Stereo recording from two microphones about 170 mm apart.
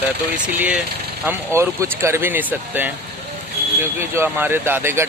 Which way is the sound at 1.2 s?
15° right (ahead or behind).